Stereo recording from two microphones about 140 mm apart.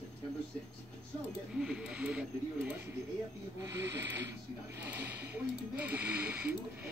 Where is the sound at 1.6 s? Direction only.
5° right (ahead or behind).